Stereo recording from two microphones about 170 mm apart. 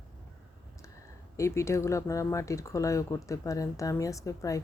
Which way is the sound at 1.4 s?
15° left (ahead or behind).